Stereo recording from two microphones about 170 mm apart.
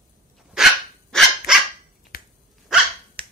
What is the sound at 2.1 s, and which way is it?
Dog, 60° left (ahead or behind).